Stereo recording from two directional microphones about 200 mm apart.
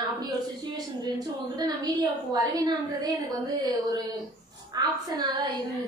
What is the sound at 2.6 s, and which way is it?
Speech, 20° right (ahead or behind).